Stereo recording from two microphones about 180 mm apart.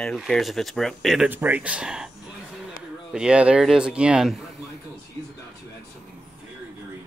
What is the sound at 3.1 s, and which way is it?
Speech, 5° right (ahead or behind).